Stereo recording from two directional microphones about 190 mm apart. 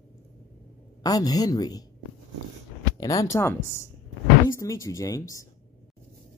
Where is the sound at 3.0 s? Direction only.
15° left (ahead or behind).